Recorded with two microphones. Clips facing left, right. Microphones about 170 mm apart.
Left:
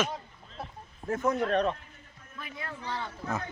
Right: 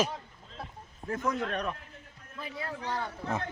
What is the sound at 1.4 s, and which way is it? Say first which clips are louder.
Speech: left 6 dB; 30° left (ahead or behind).